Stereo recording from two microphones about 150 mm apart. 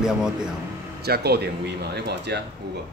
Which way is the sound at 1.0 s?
90° right.